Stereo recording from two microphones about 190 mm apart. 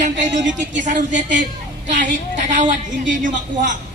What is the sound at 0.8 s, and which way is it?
Speech, 40° right (ahead or behind).